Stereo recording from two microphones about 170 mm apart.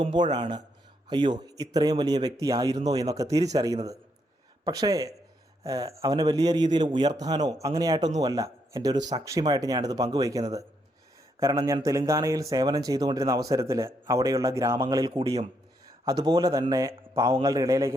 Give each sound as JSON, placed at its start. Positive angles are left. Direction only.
{"t": 0.2, "sound": "speech", "side_deg": -25}